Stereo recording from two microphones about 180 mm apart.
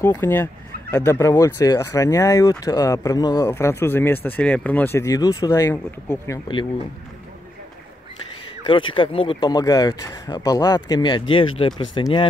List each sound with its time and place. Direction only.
0.0 s speech: 10° left (ahead or behind)
8.6 s speech: 30° left (ahead or behind)